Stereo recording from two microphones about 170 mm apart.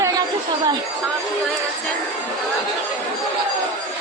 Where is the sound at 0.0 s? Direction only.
25° right (ahead or behind).